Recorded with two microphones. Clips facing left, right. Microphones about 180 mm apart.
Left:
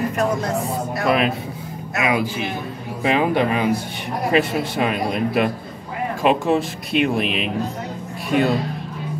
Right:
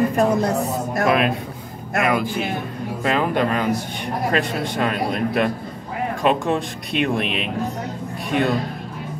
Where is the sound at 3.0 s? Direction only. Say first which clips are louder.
Left 2 dB; 10° left (ahead or behind).